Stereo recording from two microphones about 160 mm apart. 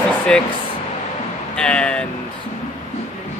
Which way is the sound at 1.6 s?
5° left (ahead or behind).